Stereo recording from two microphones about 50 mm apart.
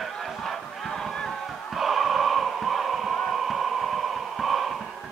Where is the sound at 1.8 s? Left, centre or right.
Centre.